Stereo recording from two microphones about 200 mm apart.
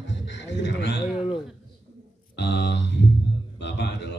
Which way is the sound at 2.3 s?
60° left (ahead or behind).